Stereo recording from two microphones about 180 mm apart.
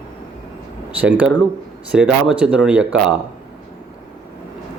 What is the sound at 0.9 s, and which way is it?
A man's voice, 5° right (ahead or behind).